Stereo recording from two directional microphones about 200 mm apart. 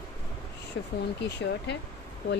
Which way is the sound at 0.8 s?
80° left.